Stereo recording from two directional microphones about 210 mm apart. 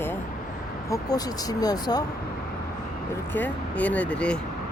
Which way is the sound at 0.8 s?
15° left (ahead or behind).